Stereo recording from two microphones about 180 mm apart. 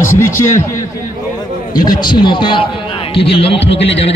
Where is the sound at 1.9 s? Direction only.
25° left (ahead or behind).